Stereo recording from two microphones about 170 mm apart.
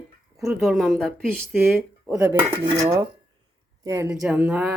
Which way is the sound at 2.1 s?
10° right (ahead or behind).